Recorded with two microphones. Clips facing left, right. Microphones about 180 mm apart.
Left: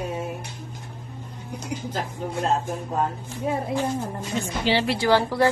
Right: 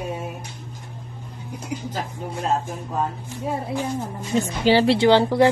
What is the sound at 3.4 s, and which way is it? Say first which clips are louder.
Speech: left 1 dB; centre (ahead or behind).